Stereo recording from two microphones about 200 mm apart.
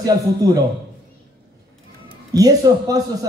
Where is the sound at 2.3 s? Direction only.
20° right (ahead or behind).